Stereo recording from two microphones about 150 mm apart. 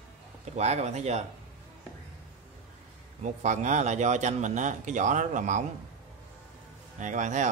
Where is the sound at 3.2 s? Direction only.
55° right (ahead or behind).